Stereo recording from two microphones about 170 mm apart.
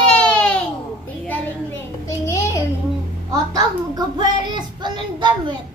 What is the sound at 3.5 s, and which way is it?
Speech, 25° right (ahead or behind).